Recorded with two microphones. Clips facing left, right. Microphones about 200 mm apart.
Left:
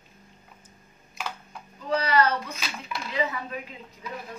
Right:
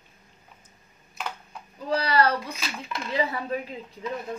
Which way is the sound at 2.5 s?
5° left (ahead or behind).